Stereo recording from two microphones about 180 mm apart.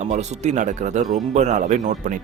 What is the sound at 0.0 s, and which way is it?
Speech, 40° right (ahead or behind).